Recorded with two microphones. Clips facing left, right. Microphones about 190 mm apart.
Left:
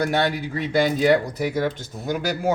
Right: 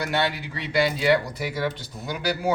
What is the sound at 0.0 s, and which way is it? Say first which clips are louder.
Speech: left 4 dB; 45° left (ahead or behind).